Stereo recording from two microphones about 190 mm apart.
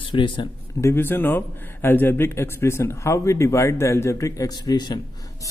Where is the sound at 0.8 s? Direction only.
10° left (ahead or behind).